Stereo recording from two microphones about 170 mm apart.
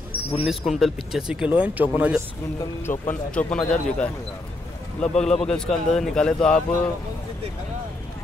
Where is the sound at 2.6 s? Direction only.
15° left (ahead or behind).